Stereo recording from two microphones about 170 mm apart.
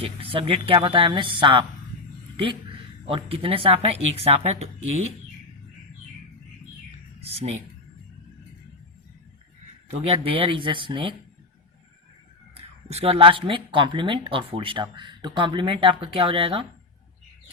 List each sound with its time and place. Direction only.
0.0 s a woman's voice: 30° right (ahead or behind)
7.2 s speech: 35° right (ahead or behind)
9.9 s speech: 35° right (ahead or behind)
12.5 s speech: 35° right (ahead or behind)